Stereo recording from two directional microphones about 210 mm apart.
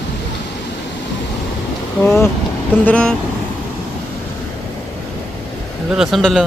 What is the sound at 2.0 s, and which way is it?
Speech, 10° left (ahead or behind).